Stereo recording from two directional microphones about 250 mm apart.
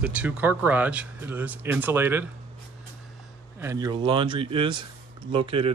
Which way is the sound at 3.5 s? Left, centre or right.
Centre.